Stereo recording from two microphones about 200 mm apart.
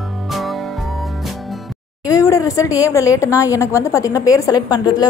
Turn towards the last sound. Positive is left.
turn(degrees=20)  # may be behind; listen again after turning